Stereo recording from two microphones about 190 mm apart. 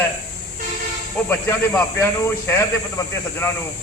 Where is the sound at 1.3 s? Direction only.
15° left (ahead or behind).